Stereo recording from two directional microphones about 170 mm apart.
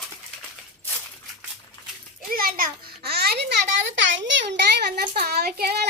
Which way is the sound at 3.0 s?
65° right (ahead or behind).